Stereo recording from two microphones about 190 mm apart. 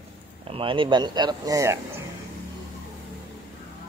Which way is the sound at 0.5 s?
25° right (ahead or behind).